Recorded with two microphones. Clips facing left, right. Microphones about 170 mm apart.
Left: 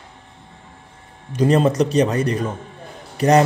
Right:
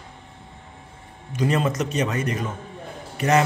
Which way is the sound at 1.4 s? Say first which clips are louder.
Left 7 dB; 35° left (ahead or behind).